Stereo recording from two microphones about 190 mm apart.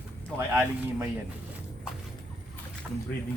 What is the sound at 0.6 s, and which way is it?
Speech, 10° right (ahead or behind).